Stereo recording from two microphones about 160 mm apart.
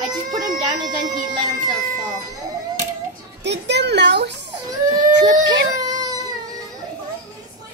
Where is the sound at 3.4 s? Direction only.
90° right.